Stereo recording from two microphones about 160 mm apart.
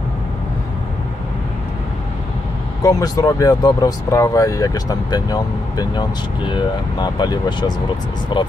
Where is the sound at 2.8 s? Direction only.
20° left (ahead or behind).